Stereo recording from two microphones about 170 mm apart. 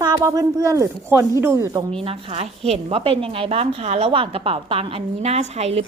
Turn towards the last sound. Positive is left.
turn(degrees=-40)  # may be behind; listen again after turning